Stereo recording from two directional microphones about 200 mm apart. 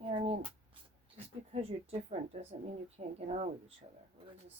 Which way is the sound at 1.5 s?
30° right (ahead or behind).